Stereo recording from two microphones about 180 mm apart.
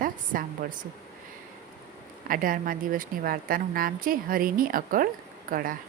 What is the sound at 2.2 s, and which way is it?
A woman's voice, 50° right (ahead or behind).